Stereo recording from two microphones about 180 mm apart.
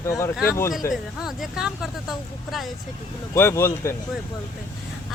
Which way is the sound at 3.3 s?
15° left (ahead or behind).